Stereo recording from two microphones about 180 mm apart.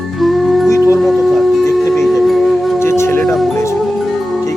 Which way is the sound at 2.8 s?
15° left (ahead or behind).